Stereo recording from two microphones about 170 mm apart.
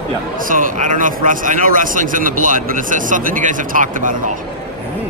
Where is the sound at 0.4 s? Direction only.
55° right (ahead or behind).